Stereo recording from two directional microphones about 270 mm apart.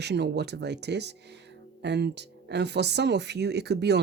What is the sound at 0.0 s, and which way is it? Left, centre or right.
Speech, right.